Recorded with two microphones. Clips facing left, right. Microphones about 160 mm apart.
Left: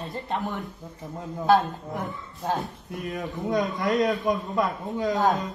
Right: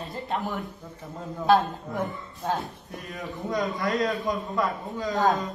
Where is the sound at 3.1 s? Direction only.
20° left (ahead or behind).